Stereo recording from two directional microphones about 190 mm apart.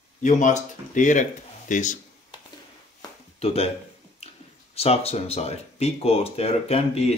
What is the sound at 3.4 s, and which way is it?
Speech, 30° left (ahead or behind).